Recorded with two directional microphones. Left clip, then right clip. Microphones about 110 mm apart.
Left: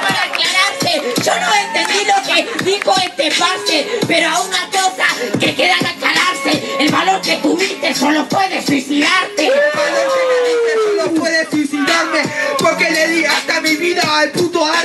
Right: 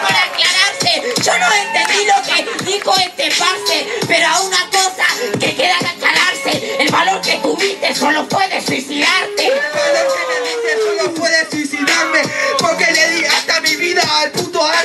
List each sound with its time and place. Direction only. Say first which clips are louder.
0.0 s music: right 2 dB; 15° right (ahead or behind)
2.9 s speech: right 2 dB; 15° right (ahead or behind)
6.4 s music: even; 20° right (ahead or behind)
11.0 s music: even; 15° right (ahead or behind)